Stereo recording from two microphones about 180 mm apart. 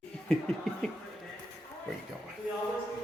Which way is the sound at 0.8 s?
Centre (ahead or behind).